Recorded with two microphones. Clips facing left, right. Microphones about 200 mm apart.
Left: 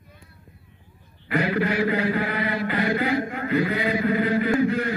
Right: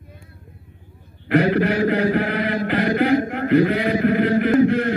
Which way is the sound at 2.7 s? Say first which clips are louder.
Right 7 dB; 55° right (ahead or behind).